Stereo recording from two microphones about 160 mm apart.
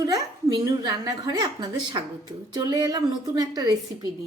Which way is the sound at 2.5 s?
25° right (ahead or behind).